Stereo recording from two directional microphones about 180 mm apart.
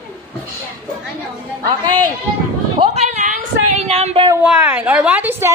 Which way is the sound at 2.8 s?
35° right (ahead or behind).